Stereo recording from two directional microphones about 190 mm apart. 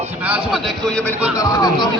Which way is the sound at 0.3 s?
5° right (ahead or behind).